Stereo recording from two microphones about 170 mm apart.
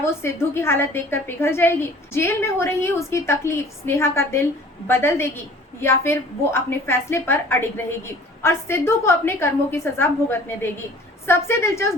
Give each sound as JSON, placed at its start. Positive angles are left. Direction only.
{"t": 0.0, "sound": "a woman's voice", "side_deg": 15}